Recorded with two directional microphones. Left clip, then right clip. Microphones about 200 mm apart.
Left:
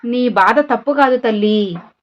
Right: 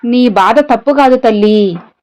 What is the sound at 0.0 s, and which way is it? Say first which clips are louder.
A woman's voice: right 4 dB; 40° right (ahead or behind).